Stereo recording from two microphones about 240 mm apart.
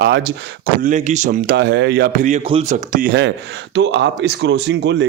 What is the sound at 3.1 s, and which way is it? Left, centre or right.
Speech, right.